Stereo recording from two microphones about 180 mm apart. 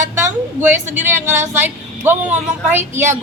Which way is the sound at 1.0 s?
10° right (ahead or behind).